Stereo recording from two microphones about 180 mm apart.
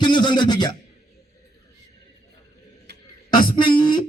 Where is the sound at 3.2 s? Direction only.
25° left (ahead or behind).